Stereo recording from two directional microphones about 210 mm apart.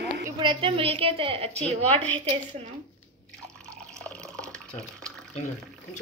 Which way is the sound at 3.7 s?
5° left (ahead or behind).